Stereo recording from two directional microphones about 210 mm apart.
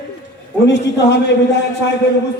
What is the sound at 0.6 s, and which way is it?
Speech, 55° left (ahead or behind).